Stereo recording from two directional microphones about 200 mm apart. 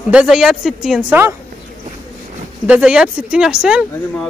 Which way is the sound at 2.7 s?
5° right (ahead or behind).